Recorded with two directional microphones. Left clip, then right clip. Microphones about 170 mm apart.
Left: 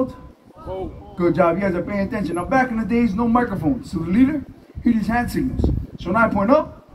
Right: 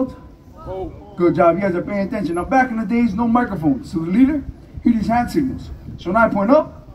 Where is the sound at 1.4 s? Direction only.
50° left (ahead or behind).